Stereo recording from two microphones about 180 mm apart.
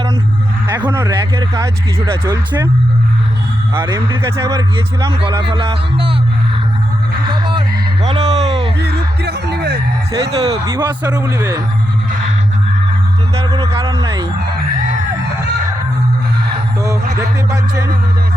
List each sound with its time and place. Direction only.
0.9 s speech: 15° right (ahead or behind)
3.9 s speech: 15° right (ahead or behind)
5.5 s speech: 30° right (ahead or behind)
7.3 s music: 25° right (ahead or behind)
8.0 s speech: 25° right (ahead or behind)
8.8 s speech: 65° right (ahead or behind)
10.1 s speech: 20° right (ahead or behind)
13.3 s speech: 30° right (ahead or behind)
17.5 s speech: 20° right (ahead or behind)